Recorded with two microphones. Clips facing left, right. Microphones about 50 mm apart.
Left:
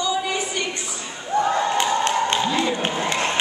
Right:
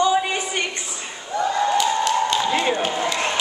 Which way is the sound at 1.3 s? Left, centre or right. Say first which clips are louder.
Even; left.